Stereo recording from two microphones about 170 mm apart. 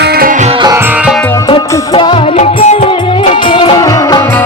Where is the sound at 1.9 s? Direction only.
30° left (ahead or behind).